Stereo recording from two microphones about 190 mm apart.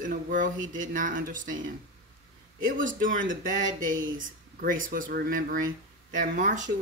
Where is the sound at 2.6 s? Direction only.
45° right (ahead or behind).